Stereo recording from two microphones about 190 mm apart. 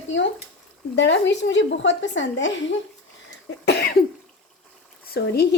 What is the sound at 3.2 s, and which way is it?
Cough, 60° left (ahead or behind).